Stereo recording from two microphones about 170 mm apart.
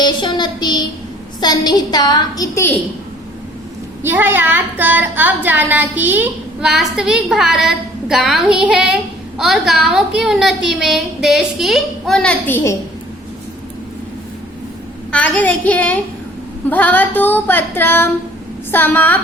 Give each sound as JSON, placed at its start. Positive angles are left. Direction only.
{"t": 0.0, "sound": "a woman's voice", "side_deg": 25}
{"t": 4.0, "sound": "a woman's voice", "side_deg": -10}
{"t": 15.1, "sound": "child singing", "side_deg": 10}